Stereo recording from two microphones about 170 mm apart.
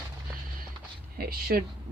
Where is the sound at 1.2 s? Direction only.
60° right (ahead or behind).